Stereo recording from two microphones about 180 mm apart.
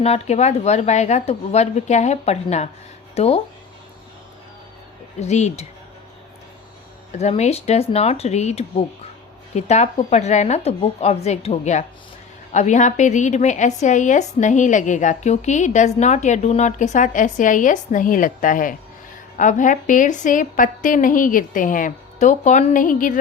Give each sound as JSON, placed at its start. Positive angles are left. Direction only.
{"t": 0.0, "sound": "a woman's voice", "side_deg": 35}
{"t": 5.2, "sound": "a woman's voice", "side_deg": 40}
{"t": 7.1, "sound": "a woman's voice", "side_deg": 40}